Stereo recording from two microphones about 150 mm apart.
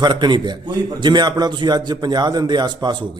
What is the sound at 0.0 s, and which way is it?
A man's voice, 30° right (ahead or behind).